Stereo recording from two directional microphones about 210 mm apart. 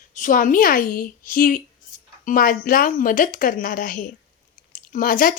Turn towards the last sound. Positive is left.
turn(degrees=40)  # may be behind; listen again after turning